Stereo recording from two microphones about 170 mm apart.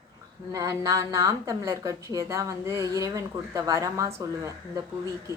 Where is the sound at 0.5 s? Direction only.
20° right (ahead or behind).